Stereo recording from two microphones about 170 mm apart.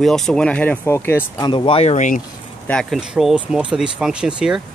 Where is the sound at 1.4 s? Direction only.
30° left (ahead or behind); by 2.2 s 50° left (ahead or behind).